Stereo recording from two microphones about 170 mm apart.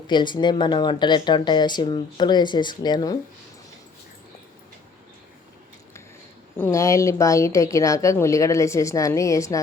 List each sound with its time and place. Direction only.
0.1 s speech: 25° left (ahead or behind)
6.6 s speech: 15° left (ahead or behind)